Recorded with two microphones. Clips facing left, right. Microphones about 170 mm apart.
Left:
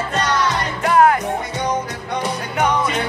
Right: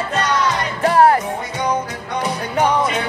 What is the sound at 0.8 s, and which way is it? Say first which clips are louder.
Music: right 1 dB; 35° right (ahead or behind).